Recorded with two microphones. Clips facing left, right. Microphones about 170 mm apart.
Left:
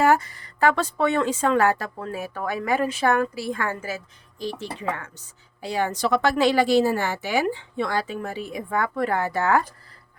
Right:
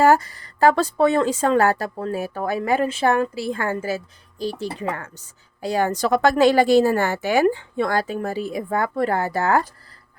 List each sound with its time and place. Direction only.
0.0 s speech: 35° right (ahead or behind)